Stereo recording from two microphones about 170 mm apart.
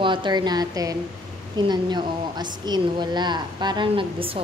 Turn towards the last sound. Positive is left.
turn(degrees=-30)  # may be behind; listen again after turning